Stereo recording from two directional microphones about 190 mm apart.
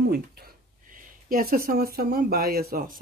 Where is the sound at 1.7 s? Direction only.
55° right (ahead or behind).